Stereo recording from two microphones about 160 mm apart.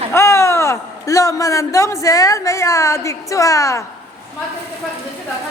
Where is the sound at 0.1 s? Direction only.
15° left (ahead or behind).